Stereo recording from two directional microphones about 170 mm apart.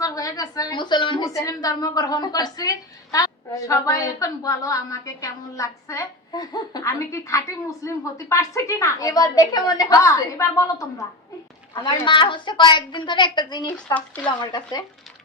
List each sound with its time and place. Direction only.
0.0 s a woman's voice: 20° left (ahead or behind)